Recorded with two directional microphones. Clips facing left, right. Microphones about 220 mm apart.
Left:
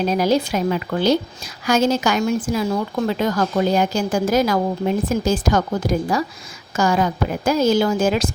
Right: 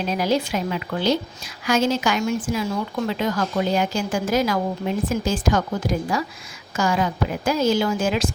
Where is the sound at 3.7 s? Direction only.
40° left (ahead or behind).